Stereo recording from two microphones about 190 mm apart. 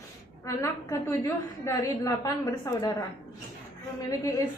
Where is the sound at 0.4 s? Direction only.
15° left (ahead or behind).